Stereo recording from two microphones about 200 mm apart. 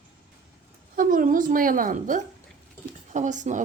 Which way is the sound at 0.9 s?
45° right (ahead or behind).